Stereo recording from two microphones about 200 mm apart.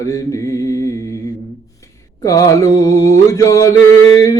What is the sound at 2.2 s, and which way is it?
Mantra, 15° left (ahead or behind).